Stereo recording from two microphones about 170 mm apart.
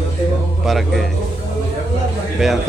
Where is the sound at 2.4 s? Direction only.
Centre (ahead or behind).